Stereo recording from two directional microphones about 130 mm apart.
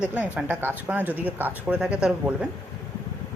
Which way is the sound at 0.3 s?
15° right (ahead or behind).